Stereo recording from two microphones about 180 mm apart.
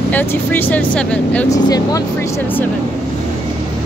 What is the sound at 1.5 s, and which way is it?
Speech, 20° left (ahead or behind).